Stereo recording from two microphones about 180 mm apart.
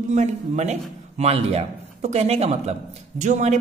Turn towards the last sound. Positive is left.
turn(degrees=-40)  # may be behind; listen again after turning